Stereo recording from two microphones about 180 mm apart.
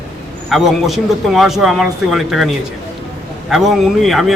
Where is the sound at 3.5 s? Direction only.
Centre (ahead or behind).